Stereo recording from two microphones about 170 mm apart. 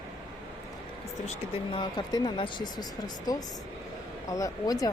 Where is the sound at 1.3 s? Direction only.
30° left (ahead or behind).